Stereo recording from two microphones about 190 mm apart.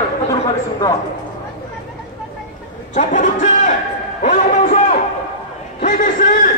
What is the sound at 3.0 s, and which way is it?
A man's voice, 40° left (ahead or behind).